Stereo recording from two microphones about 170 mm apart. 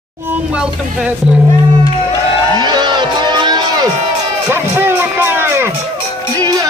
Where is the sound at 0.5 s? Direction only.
5° right (ahead or behind).